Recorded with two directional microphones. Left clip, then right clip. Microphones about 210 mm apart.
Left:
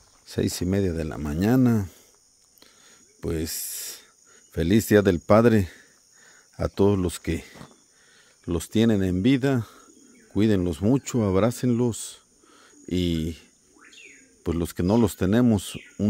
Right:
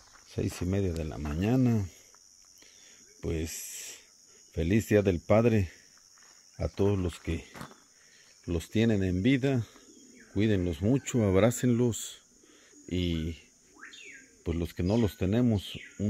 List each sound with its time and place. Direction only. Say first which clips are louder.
0.3 s speech: left 7 dB; 50° left (ahead or behind)
3.2 s speech: left 5 dB; 40° left (ahead or behind)
4.6 s speech: left 6 dB; 45° left (ahead or behind)
8.5 s speech: left 6 dB; 40° left (ahead or behind)
11.1 s speech: left 3 dB; 20° left (ahead or behind)
12.8 s speech: left 6 dB; 50° left (ahead or behind)
14.4 s speech: left 7 dB; 50° left (ahead or behind)